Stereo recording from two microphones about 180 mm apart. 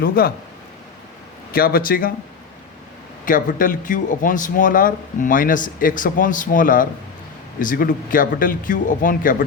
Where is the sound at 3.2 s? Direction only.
50° left (ahead or behind).